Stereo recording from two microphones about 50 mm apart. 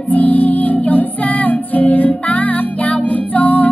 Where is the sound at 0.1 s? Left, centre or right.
Left.